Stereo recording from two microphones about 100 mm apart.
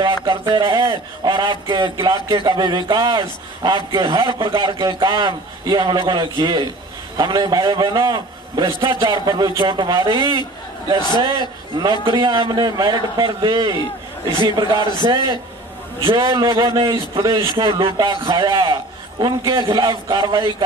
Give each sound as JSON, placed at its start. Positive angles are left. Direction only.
{"t": 0.0, "sound": "a man's voice", "side_deg": -55}
{"t": 11.0, "sound": "a man's voice", "side_deg": 45}
{"t": 11.2, "sound": "a man's voice", "side_deg": -55}
{"t": 16.0, "sound": "a man's voice", "side_deg": -60}
{"t": 17.5, "sound": "a man's voice", "side_deg": -55}